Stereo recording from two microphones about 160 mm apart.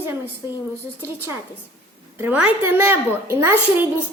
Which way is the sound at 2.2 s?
10° right (ahead or behind).